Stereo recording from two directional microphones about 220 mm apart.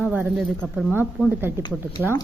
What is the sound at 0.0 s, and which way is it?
Speech, 5° right (ahead or behind).